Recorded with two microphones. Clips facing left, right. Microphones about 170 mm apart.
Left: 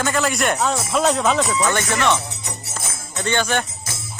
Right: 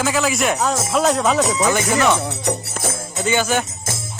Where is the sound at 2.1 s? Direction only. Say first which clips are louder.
Right 7 dB; 60° right (ahead or behind).